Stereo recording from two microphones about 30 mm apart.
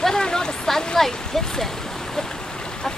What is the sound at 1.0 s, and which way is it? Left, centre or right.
Speech, centre.